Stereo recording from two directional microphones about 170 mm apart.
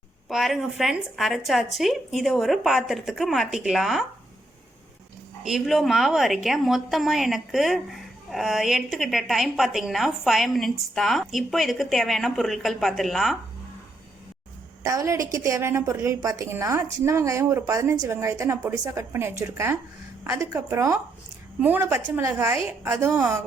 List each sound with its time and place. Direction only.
0.3 s a woman's voice: centre (ahead or behind)
5.4 s a woman's voice: centre (ahead or behind)
14.8 s a woman's voice: 20° right (ahead or behind)